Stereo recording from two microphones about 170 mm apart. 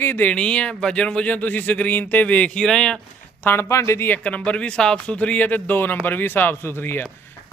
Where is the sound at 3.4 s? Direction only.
15° left (ahead or behind).